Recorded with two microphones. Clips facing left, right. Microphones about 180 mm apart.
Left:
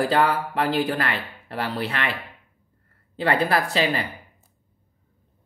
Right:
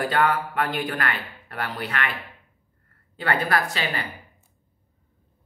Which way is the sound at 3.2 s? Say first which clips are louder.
Left 3 dB; 30° left (ahead or behind).